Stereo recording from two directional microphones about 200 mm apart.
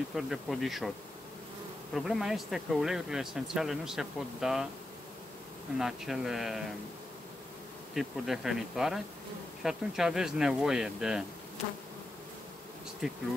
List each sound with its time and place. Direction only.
0.1 s speech: centre (ahead or behind)
2.0 s speech: centre (ahead or behind)
5.8 s speech: centre (ahead or behind)
7.9 s speech: centre (ahead or behind)
13.0 s bee: centre (ahead or behind)